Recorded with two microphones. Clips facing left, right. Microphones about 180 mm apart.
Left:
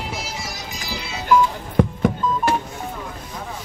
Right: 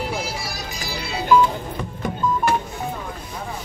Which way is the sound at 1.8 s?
65° left (ahead or behind).